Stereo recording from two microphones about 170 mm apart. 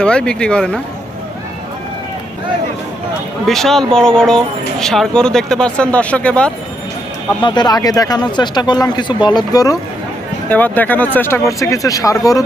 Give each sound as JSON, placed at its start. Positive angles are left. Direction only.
{"t": 0.0, "sound": "speech", "side_deg": 5}
{"t": 3.4, "sound": "speech", "side_deg": 0}
{"t": 7.4, "sound": "speech", "side_deg": 25}
{"t": 10.5, "sound": "speech", "side_deg": 10}